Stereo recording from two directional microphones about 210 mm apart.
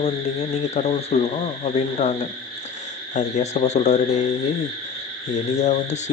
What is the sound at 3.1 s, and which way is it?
Speech, 35° left (ahead or behind).